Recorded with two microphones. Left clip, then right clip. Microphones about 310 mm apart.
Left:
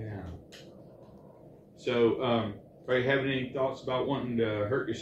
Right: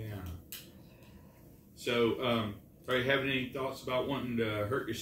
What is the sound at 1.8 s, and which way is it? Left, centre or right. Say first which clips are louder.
A man's voice: left 4 dB; centre.